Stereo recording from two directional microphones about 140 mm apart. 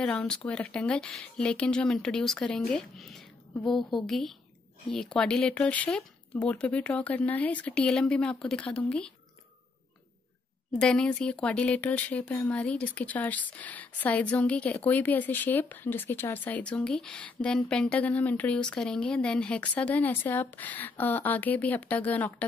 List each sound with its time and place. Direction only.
0.0 s a woman's voice: 5° left (ahead or behind)
10.8 s speech: 5° left (ahead or behind)